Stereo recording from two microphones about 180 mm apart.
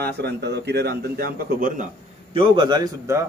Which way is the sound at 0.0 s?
65° right (ahead or behind).